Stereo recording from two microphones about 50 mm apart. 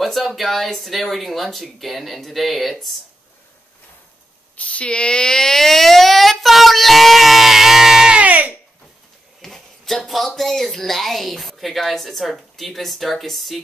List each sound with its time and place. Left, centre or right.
0.0 s speech: centre
4.6 s speech: left; by 8.2 s centre
8.2 s a sound: right
9.4 s speech: centre